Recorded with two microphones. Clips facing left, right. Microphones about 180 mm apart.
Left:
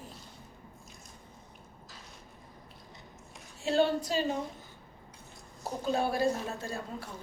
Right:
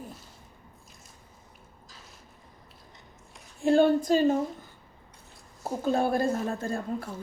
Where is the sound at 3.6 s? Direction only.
50° right (ahead or behind).